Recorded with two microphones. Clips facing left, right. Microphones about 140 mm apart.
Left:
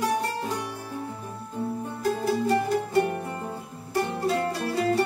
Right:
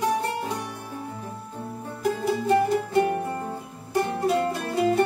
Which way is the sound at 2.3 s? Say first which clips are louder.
Right 3 dB; 20° right (ahead or behind).